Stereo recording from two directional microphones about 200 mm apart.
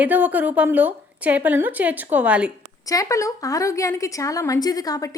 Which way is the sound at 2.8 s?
15° left (ahead or behind).